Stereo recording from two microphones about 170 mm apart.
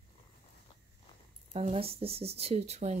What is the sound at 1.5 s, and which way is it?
Speech, 35° right (ahead or behind).